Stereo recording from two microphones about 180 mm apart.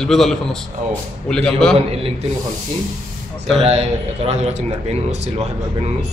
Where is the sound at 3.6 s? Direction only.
35° right (ahead or behind).